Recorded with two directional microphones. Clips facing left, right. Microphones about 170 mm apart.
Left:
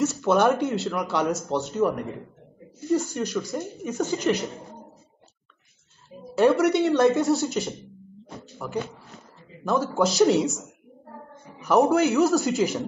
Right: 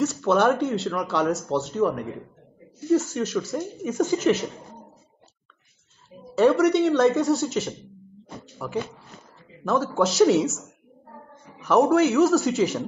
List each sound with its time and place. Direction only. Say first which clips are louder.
0.0 s speech: even; centre (ahead or behind)
6.3 s speech: right 1 dB; centre (ahead or behind)
11.6 s speech: right 1 dB; centre (ahead or behind)